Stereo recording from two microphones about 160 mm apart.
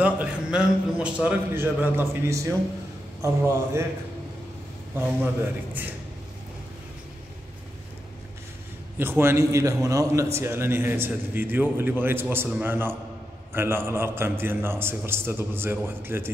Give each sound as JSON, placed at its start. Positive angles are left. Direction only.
{"t": 0.0, "sound": "a man's voice", "side_deg": -10}
{"t": 4.9, "sound": "a man's voice", "side_deg": -15}
{"t": 8.9, "sound": "a man's voice", "side_deg": -15}